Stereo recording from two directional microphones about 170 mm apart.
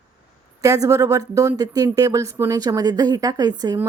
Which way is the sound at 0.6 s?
20° right (ahead or behind).